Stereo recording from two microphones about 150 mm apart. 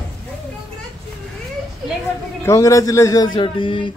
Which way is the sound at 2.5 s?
20° left (ahead or behind).